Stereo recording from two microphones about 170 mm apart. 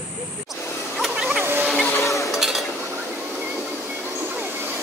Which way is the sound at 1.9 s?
20° left (ahead or behind).